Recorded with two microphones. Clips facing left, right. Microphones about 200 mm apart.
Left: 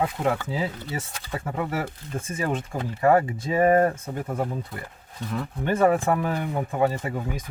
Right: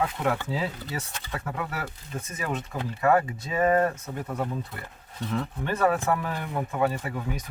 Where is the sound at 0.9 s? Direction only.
25° left (ahead or behind).